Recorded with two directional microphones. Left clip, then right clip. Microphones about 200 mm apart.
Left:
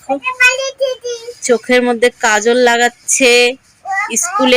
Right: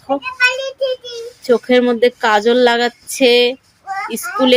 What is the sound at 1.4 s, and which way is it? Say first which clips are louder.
Speech: left 1 dB; 15° right (ahead or behind).